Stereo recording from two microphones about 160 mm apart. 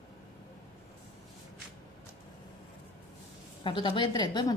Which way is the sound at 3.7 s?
30° left (ahead or behind).